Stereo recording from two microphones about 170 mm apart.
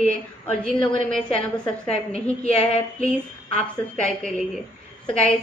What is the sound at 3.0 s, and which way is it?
A woman's voice, 5° left (ahead or behind).